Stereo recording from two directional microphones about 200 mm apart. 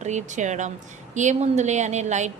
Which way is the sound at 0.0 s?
35° right (ahead or behind).